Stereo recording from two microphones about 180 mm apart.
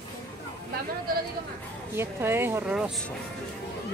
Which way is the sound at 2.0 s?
15° right (ahead or behind).